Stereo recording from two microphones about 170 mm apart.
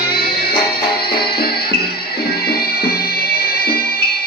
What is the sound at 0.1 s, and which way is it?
Music, 65° left (ahead or behind).